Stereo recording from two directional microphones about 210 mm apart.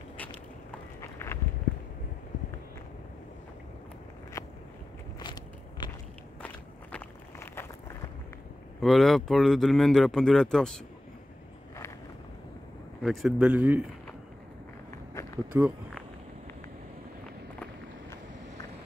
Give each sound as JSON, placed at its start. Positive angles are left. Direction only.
{"t": 1.0, "sound": "walk", "side_deg": 10}
{"t": 5.2, "sound": "walk", "side_deg": 20}
{"t": 6.4, "sound": "walk", "side_deg": 10}
{"t": 8.8, "sound": "speech", "side_deg": 0}
{"t": 13.0, "sound": "speech", "side_deg": 0}
{"t": 15.5, "sound": "speech", "side_deg": -10}